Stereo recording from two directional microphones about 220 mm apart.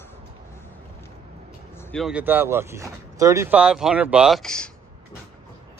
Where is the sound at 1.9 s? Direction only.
Centre (ahead or behind).